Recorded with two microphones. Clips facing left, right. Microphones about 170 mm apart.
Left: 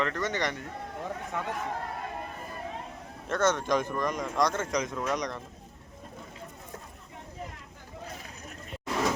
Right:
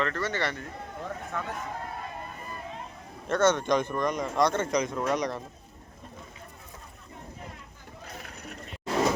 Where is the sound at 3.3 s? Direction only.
Centre (ahead or behind).